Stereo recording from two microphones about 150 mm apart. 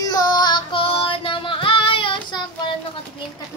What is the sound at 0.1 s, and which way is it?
Female singing, 25° left (ahead or behind).